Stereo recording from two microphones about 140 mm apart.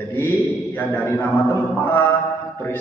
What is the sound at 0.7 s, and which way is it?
Speech, 15° left (ahead or behind).